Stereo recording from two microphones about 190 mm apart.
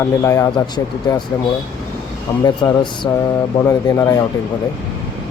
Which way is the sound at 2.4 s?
20° left (ahead or behind).